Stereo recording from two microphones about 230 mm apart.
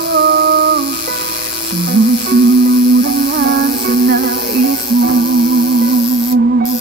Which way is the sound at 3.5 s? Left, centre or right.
Right.